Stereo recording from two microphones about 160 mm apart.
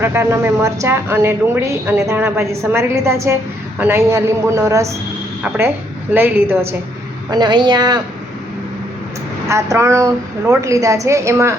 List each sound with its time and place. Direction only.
0.0 s a woman's voice: 15° right (ahead or behind)
7.3 s a woman's voice: 25° right (ahead or behind)
9.5 s a woman's voice: 20° right (ahead or behind)